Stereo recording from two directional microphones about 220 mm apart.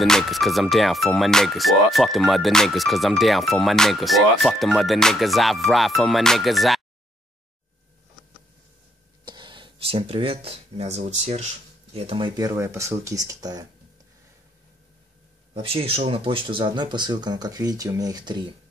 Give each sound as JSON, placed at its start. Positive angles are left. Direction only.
{"t": 0.0, "sound": "speech", "side_deg": 0}
{"t": 9.2, "sound": "speech", "side_deg": -20}
{"t": 15.5, "sound": "speech", "side_deg": -25}